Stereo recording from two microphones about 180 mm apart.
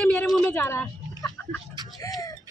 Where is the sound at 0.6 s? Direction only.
15° left (ahead or behind).